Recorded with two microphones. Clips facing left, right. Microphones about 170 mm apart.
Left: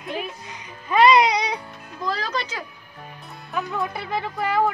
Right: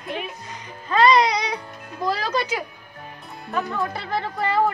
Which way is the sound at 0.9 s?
15° left (ahead or behind).